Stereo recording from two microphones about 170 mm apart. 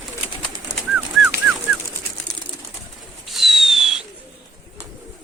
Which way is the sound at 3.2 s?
Centre (ahead or behind).